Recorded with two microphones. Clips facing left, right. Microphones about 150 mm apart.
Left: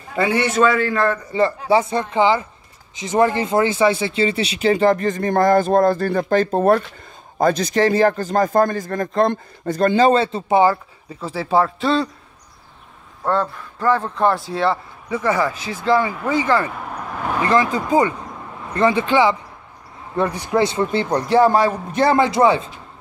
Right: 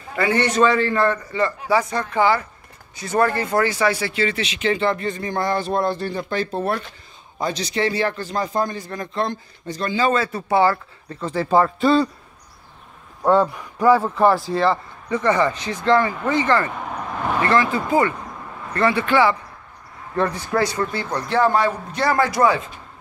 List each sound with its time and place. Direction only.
0.1 s a man's voice: 10° left (ahead or behind)
1.3 s a man's voice: 30° left (ahead or behind); by 10.0 s 50° left (ahead or behind)
10.0 s speech: 30° left (ahead or behind)
11.1 s a man's voice: 5° left (ahead or behind)
13.2 s a man's voice: 15° right (ahead or behind); by 16.9 s 10° left (ahead or behind)
16.9 s vehicle: 5° left (ahead or behind)
18.7 s speech: 20° left (ahead or behind)